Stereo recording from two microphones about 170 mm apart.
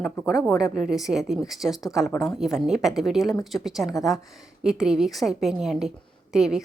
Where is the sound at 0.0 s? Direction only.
Centre (ahead or behind).